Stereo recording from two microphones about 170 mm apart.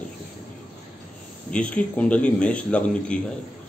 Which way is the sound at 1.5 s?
5° left (ahead or behind).